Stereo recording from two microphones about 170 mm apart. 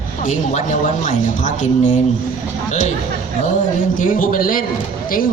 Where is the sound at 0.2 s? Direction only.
45° left (ahead or behind).